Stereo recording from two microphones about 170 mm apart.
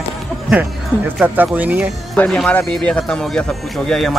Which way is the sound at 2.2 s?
5° left (ahead or behind).